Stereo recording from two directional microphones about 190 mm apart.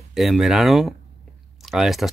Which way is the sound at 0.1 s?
Centre (ahead or behind).